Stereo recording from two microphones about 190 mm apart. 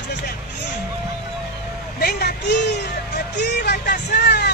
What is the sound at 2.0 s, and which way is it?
Speech, 60° left (ahead or behind).